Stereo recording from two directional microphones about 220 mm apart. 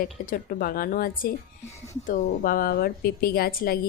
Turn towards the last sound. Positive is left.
turn(degrees=40)  # may be behind; listen again after turning